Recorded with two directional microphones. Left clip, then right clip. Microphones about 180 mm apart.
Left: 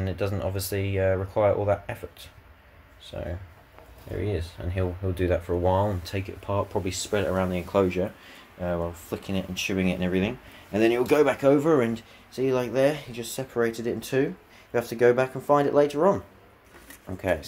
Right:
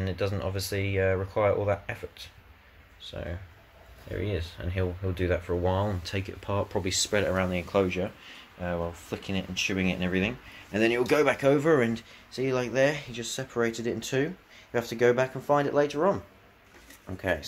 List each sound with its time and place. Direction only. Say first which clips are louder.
0.0 s speech: left 2 dB; 10° left (ahead or behind)
5.0 s speech: left 4 dB; 10° left (ahead or behind); by 7.8 s 5° right (ahead or behind)
7.8 s speech: left 3 dB; 10° left (ahead or behind)